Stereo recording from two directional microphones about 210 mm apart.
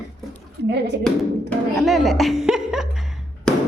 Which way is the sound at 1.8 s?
Centre (ahead or behind).